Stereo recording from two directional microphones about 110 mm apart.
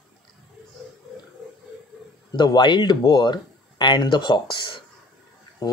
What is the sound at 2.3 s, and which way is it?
Speech, 45° left (ahead or behind).